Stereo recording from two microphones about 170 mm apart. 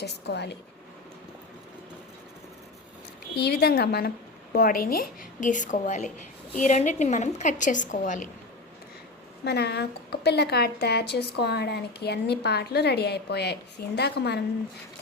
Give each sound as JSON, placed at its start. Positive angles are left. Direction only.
{"t": 0.0, "sound": "a woman's voice", "side_deg": 80}
{"t": 3.3, "sound": "a woman's voice", "side_deg": 70}
{"t": 9.4, "sound": "a woman's voice", "side_deg": 75}